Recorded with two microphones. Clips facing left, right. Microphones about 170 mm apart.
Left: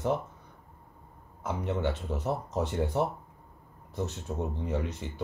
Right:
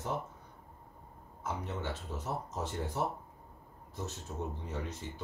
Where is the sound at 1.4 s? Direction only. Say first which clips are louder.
Left 7 dB; 65° left (ahead or behind).